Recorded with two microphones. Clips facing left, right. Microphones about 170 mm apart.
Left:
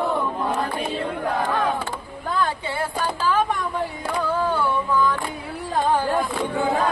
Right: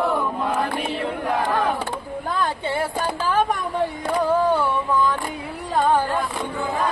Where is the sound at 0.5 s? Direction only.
75° right (ahead or behind).